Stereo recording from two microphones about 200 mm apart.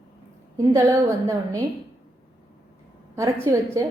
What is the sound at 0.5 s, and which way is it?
A woman's voice, 15° right (ahead or behind).